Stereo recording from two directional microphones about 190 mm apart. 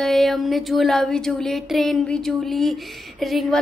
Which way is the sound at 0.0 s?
Centre (ahead or behind).